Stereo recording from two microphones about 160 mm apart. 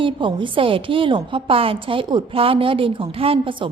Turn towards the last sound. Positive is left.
turn(degrees=-30)  # may be behind; listen again after turning